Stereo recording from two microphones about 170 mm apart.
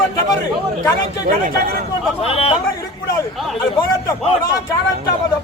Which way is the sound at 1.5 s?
60° right (ahead or behind).